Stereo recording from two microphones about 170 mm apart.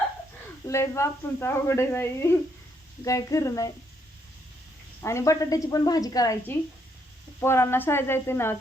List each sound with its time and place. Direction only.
0.7 s a woman's voice: 15° left (ahead or behind)
5.0 s a woman's voice: 15° left (ahead or behind)